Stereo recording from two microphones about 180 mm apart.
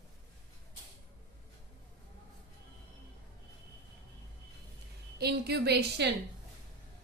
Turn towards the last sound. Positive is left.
turn(degrees=-65)  # may be behind; listen again after turning